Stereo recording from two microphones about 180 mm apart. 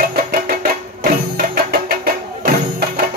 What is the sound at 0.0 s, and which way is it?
Music, 55° right (ahead or behind).